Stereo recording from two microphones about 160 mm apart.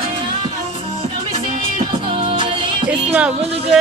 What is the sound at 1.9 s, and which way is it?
Music, 30° right (ahead or behind).